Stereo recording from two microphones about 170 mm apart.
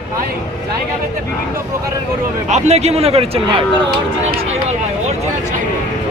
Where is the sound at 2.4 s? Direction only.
40° right (ahead or behind).